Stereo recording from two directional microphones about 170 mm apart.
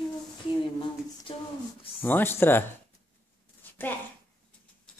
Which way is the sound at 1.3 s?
30° left (ahead or behind).